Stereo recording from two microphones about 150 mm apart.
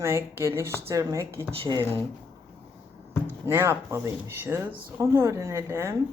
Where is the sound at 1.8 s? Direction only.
15° left (ahead or behind).